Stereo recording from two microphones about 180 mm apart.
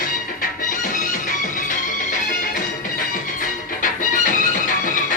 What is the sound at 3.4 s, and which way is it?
Music, 45° left (ahead or behind).